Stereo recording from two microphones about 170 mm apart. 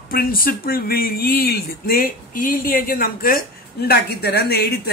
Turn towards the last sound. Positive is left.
turn(degrees=70)  # may be behind; listen again after turning